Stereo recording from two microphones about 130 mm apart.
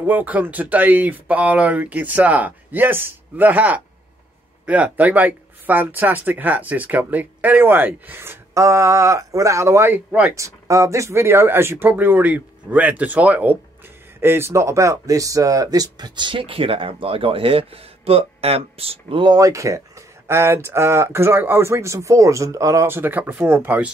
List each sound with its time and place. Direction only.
0.0 s speech: 15° right (ahead or behind)
10.3 s speech: 25° right (ahead or behind)